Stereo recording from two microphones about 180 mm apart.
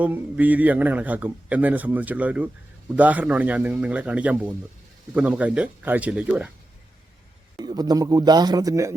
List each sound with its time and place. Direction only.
0.0 s a man's voice: 10° right (ahead or behind)
7.5 s speech: 20° right (ahead or behind)